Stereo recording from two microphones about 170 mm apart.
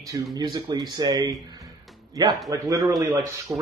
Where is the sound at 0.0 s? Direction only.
20° right (ahead or behind).